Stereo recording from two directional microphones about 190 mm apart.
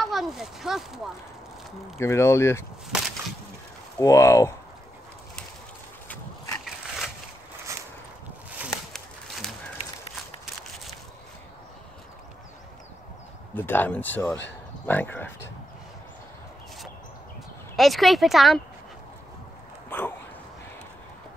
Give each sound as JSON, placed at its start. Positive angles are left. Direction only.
{"t": 0.0, "sound": "speech", "side_deg": 0}
{"t": 2.0, "sound": "speech", "side_deg": 15}
{"t": 2.9, "sound": "a sound", "side_deg": 0}
{"t": 4.0, "sound": "speech", "side_deg": 15}
{"t": 8.5, "sound": "a sound", "side_deg": -5}
{"t": 13.6, "sound": "speech", "side_deg": 10}
{"t": 17.7, "sound": "speech", "side_deg": 0}
{"t": 19.9, "sound": "dog", "side_deg": 10}